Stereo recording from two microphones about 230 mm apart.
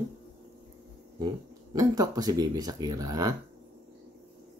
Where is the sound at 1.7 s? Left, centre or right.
Centre.